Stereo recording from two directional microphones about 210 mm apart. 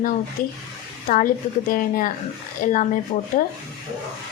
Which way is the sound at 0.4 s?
40° left (ahead or behind).